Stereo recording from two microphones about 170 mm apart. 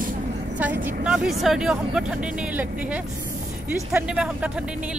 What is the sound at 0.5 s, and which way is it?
A woman's voice, 10° right (ahead or behind).